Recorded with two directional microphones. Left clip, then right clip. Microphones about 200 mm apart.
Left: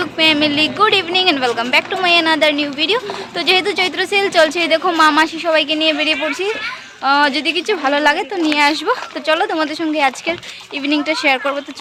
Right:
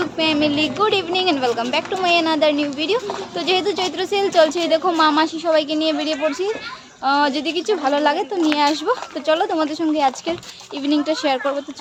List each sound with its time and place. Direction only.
0.0 s a woman's voice: centre (ahead or behind)